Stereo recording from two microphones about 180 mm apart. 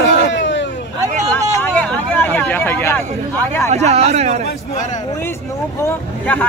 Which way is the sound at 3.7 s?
35° right (ahead or behind).